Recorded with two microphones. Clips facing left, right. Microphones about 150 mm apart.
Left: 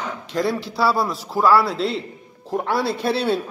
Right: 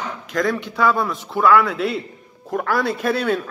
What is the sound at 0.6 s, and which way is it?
Speech, 35° left (ahead or behind).